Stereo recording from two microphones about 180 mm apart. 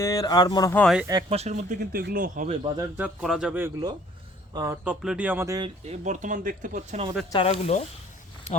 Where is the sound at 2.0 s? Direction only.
55° right (ahead or behind).